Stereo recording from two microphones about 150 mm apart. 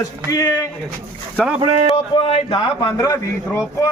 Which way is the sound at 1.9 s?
35° left (ahead or behind).